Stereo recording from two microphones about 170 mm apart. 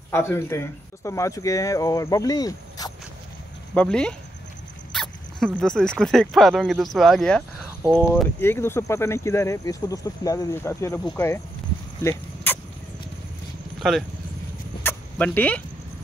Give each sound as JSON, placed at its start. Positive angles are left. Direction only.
{"t": 0.1, "sound": "speech", "side_deg": 15}
{"t": 3.7, "sound": "speech", "side_deg": 5}
{"t": 4.9, "sound": "dog", "side_deg": 0}
{"t": 5.6, "sound": "speech", "side_deg": 5}
{"t": 12.0, "sound": "a sound", "side_deg": 15}
{"t": 13.8, "sound": "speech", "side_deg": 0}
{"t": 14.8, "sound": "vehicle", "side_deg": 10}